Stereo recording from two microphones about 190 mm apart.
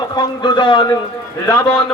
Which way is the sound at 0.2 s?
25° left (ahead or behind).